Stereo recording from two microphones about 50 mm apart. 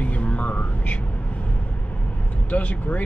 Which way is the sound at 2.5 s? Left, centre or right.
Left.